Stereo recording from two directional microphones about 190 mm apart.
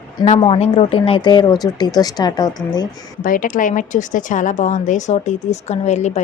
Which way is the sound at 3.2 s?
45° left (ahead or behind).